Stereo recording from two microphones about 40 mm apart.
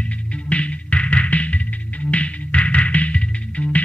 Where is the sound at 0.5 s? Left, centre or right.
Left.